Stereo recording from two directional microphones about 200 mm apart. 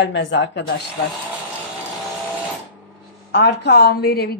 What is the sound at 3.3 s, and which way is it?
Speech, 55° left (ahead or behind).